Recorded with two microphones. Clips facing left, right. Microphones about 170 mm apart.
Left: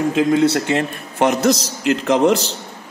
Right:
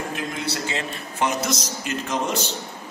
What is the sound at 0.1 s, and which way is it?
A man's voice, 70° left (ahead or behind).